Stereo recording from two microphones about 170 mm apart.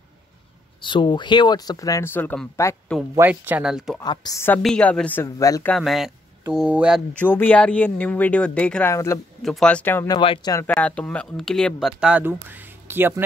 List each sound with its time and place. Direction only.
0.8 s speech: 30° left (ahead or behind)
3.2 s speech: 10° right (ahead or behind)
4.0 s speech: 25° left (ahead or behind)
4.6 s speech: 5° left (ahead or behind)
5.7 s speech: centre (ahead or behind)
7.2 s speech: 10° left (ahead or behind)
8.9 s speech: 15° left (ahead or behind)
9.4 s speech: 5° left (ahead or behind)
10.0 s speech: 25° left (ahead or behind)
10.7 s speech: 10° left (ahead or behind); by 13.2 s 15° right (ahead or behind)